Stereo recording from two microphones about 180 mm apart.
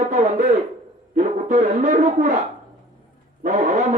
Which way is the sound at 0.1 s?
40° right (ahead or behind).